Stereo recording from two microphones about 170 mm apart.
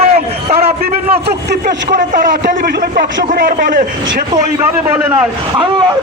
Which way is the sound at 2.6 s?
65° right (ahead or behind).